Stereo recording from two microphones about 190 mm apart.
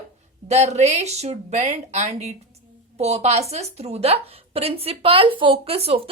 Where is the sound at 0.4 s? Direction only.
35° right (ahead or behind).